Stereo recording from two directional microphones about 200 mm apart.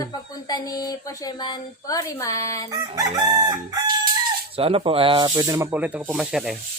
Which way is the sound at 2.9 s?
20° right (ahead or behind).